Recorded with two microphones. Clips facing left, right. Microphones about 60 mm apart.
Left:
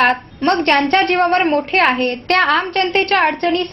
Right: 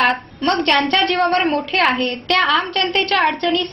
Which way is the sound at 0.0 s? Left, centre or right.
Left.